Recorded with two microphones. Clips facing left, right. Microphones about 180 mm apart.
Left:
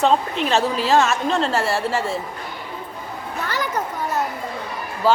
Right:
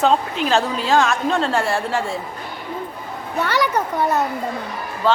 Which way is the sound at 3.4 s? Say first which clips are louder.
Right 6 dB; 75° right (ahead or behind).